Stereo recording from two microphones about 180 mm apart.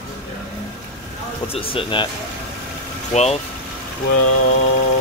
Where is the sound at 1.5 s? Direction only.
30° left (ahead or behind).